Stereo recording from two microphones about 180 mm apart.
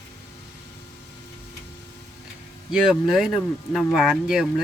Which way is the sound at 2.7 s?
5° right (ahead or behind).